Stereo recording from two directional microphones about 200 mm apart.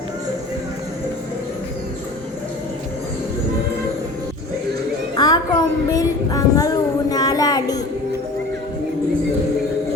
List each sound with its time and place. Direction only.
5.1 s music: 20° left (ahead or behind)